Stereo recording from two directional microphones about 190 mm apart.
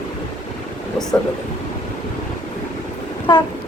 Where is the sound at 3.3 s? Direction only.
25° left (ahead or behind).